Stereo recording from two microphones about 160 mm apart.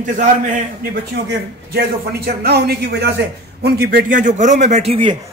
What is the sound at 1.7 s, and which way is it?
A man's voice, 75° right (ahead or behind).